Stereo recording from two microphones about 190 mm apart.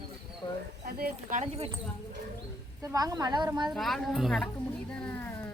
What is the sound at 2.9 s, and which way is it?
Speech, 20° right (ahead or behind).